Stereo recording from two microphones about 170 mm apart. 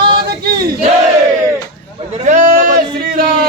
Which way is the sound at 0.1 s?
65° right (ahead or behind).